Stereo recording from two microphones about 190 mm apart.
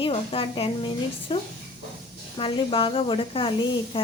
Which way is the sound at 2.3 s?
25° left (ahead or behind).